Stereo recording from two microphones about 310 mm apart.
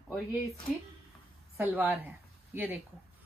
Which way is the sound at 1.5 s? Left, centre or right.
Centre.